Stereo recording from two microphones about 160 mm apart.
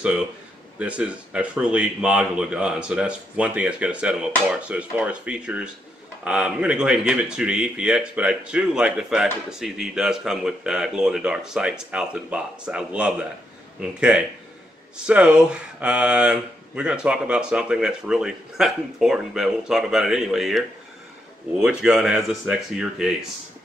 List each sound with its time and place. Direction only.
0.7 s speech: 5° right (ahead or behind)